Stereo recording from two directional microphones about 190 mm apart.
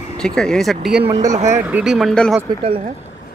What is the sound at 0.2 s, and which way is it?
Speech, 5° left (ahead or behind).